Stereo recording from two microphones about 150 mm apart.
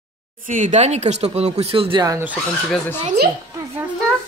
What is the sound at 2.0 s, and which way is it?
Speech, 15° right (ahead or behind).